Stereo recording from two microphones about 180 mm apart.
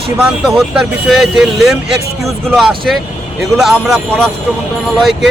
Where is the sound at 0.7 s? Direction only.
Centre (ahead or behind).